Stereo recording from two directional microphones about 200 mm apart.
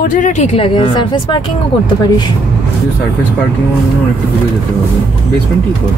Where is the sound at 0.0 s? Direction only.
40° left (ahead or behind).